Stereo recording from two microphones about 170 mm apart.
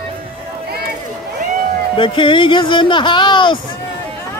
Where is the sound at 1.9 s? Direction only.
30° left (ahead or behind).